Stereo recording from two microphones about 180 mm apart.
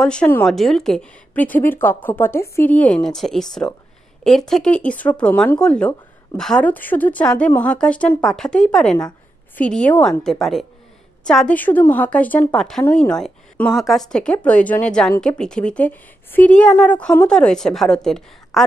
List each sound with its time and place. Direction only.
0.0 s a woman's voice: 5° left (ahead or behind)